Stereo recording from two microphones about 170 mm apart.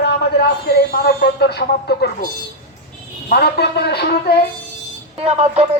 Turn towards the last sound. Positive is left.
turn(degrees=-35)  # may be behind; listen again after turning